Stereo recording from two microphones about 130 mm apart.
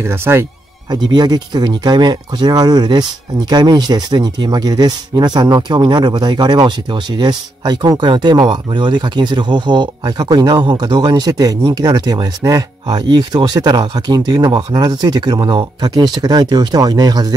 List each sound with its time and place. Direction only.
0.0 s speech: 20° right (ahead or behind)
0.8 s speech: 35° right (ahead or behind)